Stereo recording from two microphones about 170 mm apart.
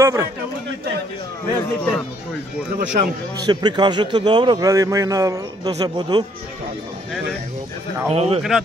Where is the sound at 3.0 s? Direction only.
55° right (ahead or behind).